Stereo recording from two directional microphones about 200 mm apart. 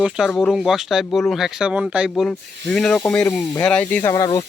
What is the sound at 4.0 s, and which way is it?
Speech, 20° left (ahead or behind).